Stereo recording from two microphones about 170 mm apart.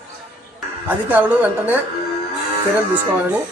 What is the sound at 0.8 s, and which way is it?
Speech, 10° right (ahead or behind).